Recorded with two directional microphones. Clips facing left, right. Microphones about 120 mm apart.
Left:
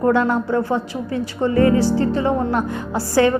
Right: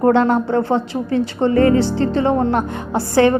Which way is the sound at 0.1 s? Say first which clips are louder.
Right 3 dB; 25° right (ahead or behind).